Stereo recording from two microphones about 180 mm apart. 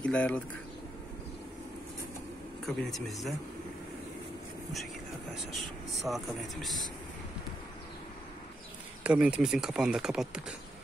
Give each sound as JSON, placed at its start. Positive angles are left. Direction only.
{"t": 0.0, "sound": "speech", "side_deg": 5}
{"t": 2.6, "sound": "speech", "side_deg": 0}
{"t": 5.3, "sound": "speech", "side_deg": 0}
{"t": 9.0, "sound": "speech", "side_deg": -5}